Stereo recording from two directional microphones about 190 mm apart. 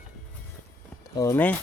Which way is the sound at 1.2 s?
15° left (ahead or behind).